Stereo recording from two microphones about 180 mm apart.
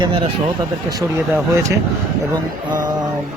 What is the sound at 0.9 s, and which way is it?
Speech, 15° right (ahead or behind).